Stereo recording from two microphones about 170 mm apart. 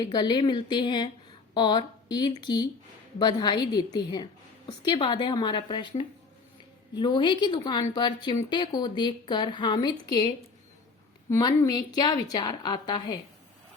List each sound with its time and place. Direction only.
0.0 s speech: 25° left (ahead or behind)
11.3 s speech: 20° left (ahead or behind)